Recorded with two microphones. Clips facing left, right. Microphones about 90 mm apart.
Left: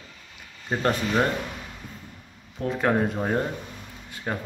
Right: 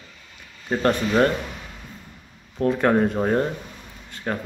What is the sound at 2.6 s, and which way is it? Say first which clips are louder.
Speech: right 4 dB; centre (ahead or behind).